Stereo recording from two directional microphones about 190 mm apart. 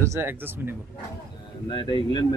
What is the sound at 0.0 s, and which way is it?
Speech, 15° right (ahead or behind).